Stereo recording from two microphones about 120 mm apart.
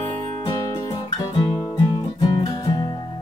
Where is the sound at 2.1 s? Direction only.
35° left (ahead or behind).